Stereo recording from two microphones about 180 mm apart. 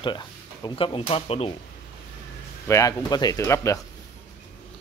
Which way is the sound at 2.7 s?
20° left (ahead or behind).